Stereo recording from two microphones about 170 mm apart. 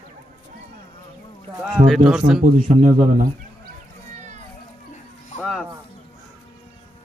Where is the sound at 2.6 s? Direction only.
45° right (ahead or behind).